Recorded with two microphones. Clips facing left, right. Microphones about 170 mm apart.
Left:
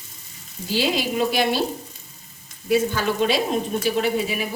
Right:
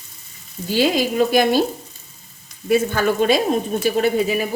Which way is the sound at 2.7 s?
55° right (ahead or behind).